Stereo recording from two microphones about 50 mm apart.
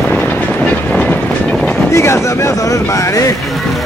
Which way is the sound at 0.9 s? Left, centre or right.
Left.